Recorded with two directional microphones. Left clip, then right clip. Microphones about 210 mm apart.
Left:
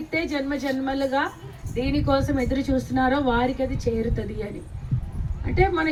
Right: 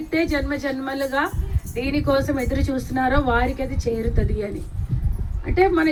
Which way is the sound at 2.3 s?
45° right (ahead or behind).